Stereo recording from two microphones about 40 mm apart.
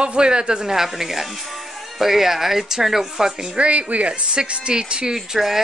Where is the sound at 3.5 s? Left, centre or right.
Right.